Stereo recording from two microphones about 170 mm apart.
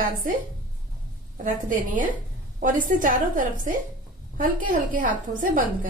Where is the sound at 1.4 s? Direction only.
50° right (ahead or behind).